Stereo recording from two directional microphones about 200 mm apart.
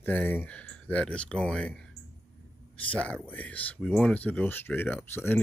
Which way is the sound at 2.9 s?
5° left (ahead or behind).